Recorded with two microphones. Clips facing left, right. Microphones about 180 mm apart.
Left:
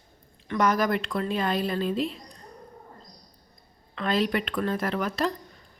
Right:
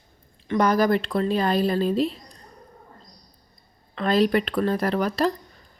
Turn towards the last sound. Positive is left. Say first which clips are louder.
# right 5 dB
turn(degrees=-35)  # may be behind; listen again after turning